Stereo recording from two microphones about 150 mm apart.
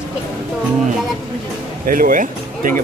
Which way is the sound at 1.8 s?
65° right (ahead or behind).